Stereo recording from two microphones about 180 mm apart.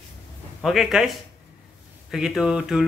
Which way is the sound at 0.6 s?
Centre (ahead or behind).